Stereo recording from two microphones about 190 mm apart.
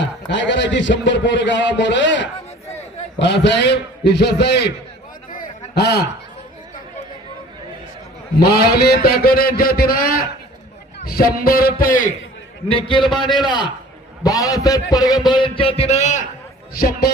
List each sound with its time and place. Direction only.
0.0 s a man's voice: 70° left (ahead or behind)
5.3 s a sound: 50° left (ahead or behind)
8.4 s a man's voice: 55° left (ahead or behind)
12.6 s a man's voice: 25° left (ahead or behind)
16.7 s a man's voice: 50° left (ahead or behind)